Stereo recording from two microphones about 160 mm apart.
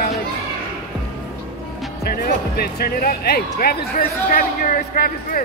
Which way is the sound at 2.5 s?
75° left (ahead or behind).